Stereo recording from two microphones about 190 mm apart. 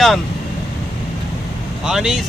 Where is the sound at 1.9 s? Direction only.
5° right (ahead or behind).